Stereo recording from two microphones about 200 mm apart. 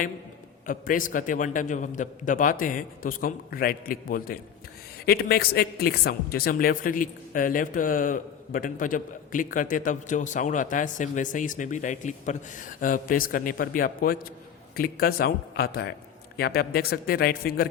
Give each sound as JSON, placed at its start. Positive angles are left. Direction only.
{"t": 0.7, "sound": "a woman's voice", "side_deg": 45}